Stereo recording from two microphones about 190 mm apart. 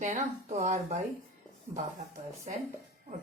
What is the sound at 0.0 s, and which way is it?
Speech, 40° right (ahead or behind).